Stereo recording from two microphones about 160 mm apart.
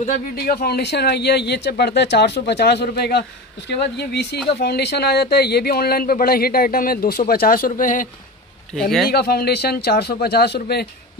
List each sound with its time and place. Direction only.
0.4 s speech: 75° left (ahead or behind); by 8.1 s 55° left (ahead or behind)
9.1 s speech: 80° left